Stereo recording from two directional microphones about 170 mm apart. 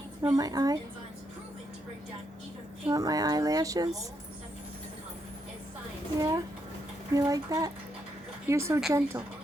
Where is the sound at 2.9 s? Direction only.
20° right (ahead or behind).